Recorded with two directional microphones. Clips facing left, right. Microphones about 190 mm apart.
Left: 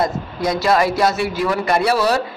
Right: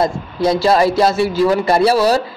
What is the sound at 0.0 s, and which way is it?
A man's voice, 30° right (ahead or behind).